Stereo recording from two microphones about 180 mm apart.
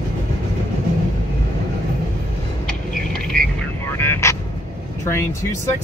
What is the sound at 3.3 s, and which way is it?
Vehicle, 50° right (ahead or behind).